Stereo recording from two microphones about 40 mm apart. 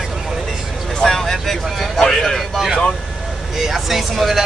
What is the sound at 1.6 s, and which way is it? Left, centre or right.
Speech, centre.